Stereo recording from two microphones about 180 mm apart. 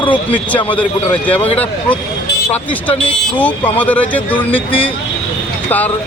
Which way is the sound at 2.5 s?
10° left (ahead or behind).